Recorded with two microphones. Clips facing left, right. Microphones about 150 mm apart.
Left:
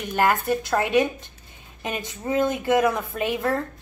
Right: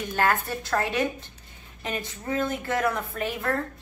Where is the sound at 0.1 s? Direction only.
15° left (ahead or behind).